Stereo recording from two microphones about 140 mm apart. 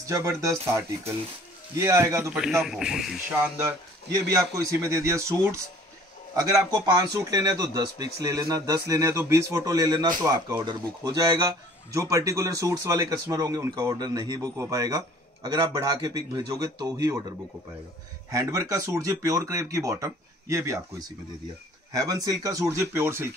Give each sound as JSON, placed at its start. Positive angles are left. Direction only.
{"t": 0.0, "sound": "speech", "side_deg": -20}
{"t": 2.6, "sound": "speech", "side_deg": -5}
{"t": 4.1, "sound": "speech", "side_deg": -20}
{"t": 18.3, "sound": "speech", "side_deg": -20}